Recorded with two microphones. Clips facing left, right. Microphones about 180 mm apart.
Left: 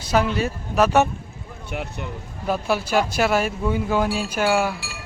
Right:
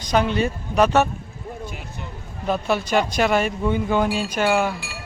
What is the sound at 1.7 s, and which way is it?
Speech, 65° left (ahead or behind).